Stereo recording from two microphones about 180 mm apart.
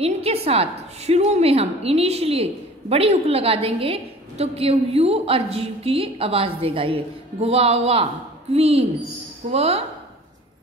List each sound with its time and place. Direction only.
0.0 s a woman's voice: 35° right (ahead or behind)